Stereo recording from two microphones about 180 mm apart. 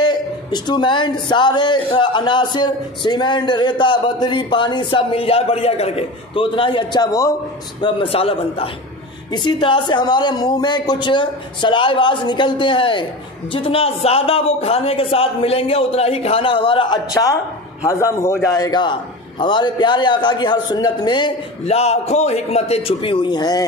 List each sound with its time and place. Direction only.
0.0 s speech: 25° left (ahead or behind)
7.8 s a man's voice: 30° left (ahead or behind)